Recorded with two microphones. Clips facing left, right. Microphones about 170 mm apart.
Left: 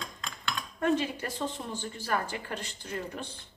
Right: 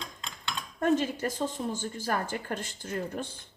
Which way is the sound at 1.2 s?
45° right (ahead or behind).